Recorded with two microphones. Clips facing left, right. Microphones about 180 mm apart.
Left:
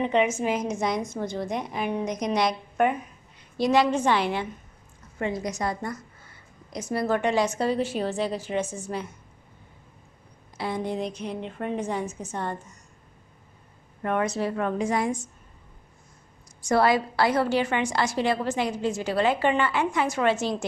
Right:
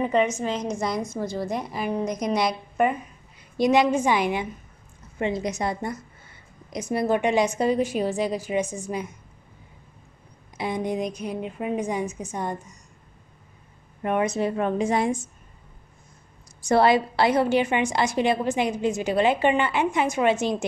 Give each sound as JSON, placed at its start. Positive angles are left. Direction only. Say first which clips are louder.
{"t": 0.0, "sound": "a woman's voice", "louder": "right 1 dB", "side_deg": 0}
{"t": 3.5, "sound": "a woman's voice", "louder": "right 2 dB", "side_deg": -15}
{"t": 10.6, "sound": "a woman's voice", "louder": "right 2 dB", "side_deg": -15}
{"t": 14.0, "sound": "a woman's voice", "louder": "right 2 dB", "side_deg": -20}
{"t": 16.6, "sound": "a woman's voice", "louder": "right 3 dB", "side_deg": -25}